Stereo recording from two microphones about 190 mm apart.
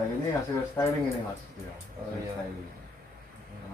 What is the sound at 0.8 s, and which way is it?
Speech, 15° left (ahead or behind).